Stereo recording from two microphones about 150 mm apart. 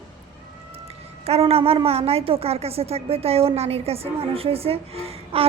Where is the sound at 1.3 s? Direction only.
40° right (ahead or behind).